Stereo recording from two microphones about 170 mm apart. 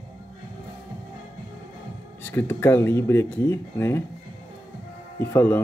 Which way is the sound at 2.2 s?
15° left (ahead or behind).